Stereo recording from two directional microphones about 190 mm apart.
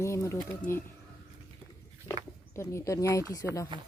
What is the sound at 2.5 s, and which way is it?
Speech, 15° left (ahead or behind).